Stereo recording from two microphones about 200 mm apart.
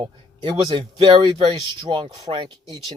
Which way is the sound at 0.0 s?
25° right (ahead or behind).